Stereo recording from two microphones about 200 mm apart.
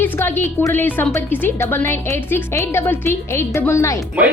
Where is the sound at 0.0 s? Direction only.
10° left (ahead or behind).